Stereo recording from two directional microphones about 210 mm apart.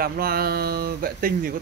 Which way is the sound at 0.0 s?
45° right (ahead or behind).